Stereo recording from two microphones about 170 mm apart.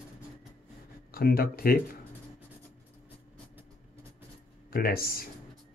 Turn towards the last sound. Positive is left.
turn(degrees=60)  # may be behind; listen again after turning